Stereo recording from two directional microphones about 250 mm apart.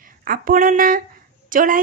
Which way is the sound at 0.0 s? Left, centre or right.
Right.